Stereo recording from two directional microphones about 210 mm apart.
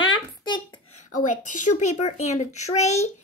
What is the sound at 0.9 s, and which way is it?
A child's voice, 35° left (ahead or behind).